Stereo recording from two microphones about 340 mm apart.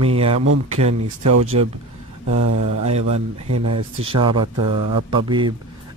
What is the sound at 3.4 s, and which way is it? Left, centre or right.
Speech, right.